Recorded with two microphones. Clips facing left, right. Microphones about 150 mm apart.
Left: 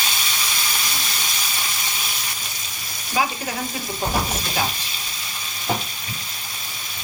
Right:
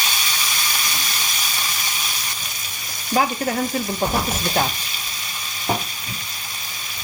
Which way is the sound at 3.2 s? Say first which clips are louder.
Right 3 dB; 45° right (ahead or behind).